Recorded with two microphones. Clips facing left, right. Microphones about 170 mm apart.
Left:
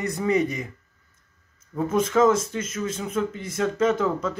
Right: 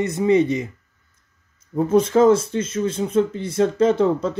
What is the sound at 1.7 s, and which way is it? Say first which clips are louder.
Speech: right 5 dB; 30° right (ahead or behind).